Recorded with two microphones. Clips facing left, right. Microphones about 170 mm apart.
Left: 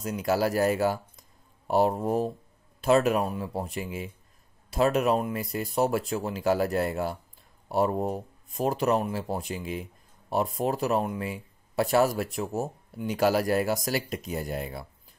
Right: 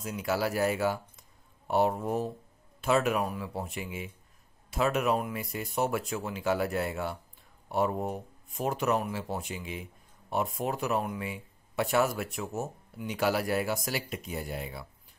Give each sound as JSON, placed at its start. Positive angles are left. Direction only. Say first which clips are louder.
{"t": 0.0, "sound": "speech", "louder": "left 4 dB", "side_deg": 40}